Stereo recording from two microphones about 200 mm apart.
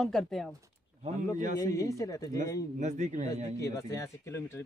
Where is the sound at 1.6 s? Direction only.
15° left (ahead or behind).